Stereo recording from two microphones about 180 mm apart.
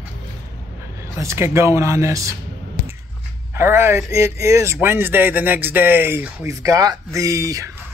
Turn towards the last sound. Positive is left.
turn(degrees=-20)  # may be behind; listen again after turning